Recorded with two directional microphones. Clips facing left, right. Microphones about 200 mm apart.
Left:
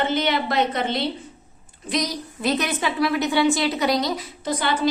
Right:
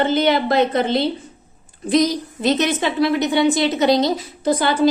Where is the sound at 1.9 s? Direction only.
25° right (ahead or behind).